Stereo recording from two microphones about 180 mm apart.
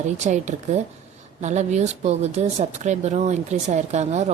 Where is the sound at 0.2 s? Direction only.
40° right (ahead or behind).